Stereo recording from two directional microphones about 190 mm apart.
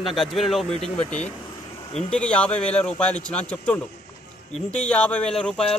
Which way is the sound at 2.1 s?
5° left (ahead or behind).